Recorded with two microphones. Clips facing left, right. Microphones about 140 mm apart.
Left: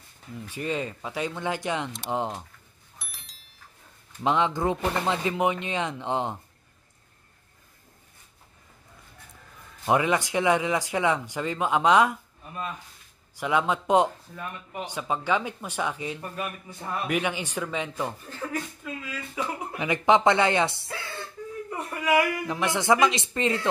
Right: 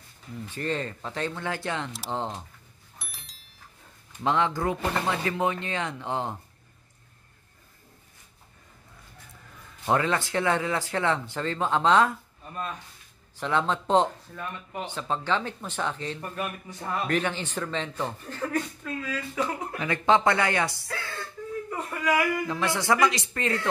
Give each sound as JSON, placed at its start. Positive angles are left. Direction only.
{"t": 0.5, "sound": "speech", "side_deg": 10}
{"t": 3.0, "sound": "a sound", "side_deg": 0}
{"t": 4.2, "sound": "speech", "side_deg": 20}
{"t": 9.8, "sound": "a man's voice", "side_deg": 15}